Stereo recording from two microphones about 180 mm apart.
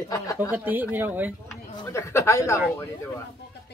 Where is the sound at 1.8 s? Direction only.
15° left (ahead or behind).